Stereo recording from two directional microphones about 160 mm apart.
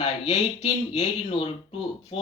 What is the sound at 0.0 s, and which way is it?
Speech, 45° left (ahead or behind).